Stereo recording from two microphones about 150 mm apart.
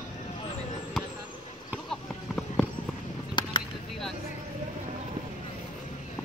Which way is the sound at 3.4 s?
30° left (ahead or behind).